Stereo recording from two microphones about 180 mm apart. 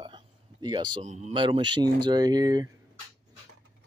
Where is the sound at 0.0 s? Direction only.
25° right (ahead or behind).